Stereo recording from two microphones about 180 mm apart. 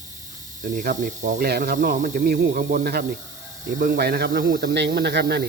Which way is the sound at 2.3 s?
60° right (ahead or behind).